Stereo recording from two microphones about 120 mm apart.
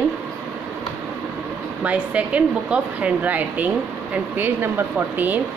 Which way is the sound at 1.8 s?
10° right (ahead or behind).